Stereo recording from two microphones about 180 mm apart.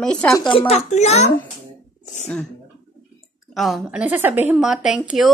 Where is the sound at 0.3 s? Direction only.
25° left (ahead or behind).